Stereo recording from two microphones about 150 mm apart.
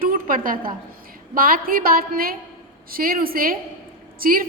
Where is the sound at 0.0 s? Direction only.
65° right (ahead or behind).